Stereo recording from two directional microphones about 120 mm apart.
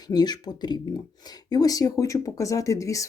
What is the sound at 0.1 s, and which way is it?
Speech, 35° left (ahead or behind).